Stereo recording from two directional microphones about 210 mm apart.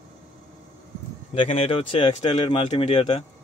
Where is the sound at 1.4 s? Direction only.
25° left (ahead or behind).